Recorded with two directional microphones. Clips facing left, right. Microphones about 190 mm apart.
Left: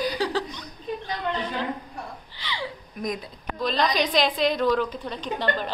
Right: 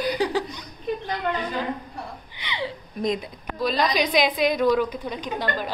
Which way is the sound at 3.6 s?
10° right (ahead or behind).